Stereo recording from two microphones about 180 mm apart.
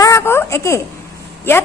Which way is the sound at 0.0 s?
15° left (ahead or behind).